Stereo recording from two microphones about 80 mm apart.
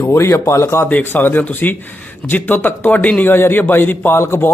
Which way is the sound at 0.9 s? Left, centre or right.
Left.